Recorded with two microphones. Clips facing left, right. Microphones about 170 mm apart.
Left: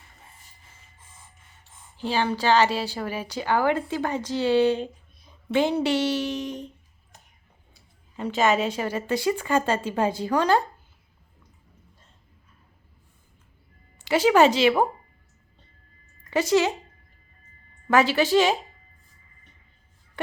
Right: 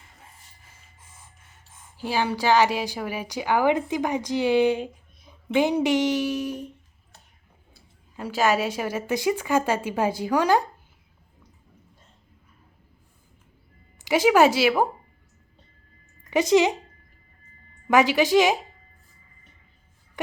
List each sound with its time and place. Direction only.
2.0 s a woman's voice: 10° right (ahead or behind)
8.1 s a woman's voice: centre (ahead or behind)
14.0 s a woman's voice: 10° right (ahead or behind)
16.3 s a woman's voice: 15° right (ahead or behind)
17.8 s a woman's voice: 15° right (ahead or behind)